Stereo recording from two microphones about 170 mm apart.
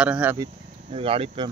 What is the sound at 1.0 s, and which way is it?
Speech, 35° right (ahead or behind).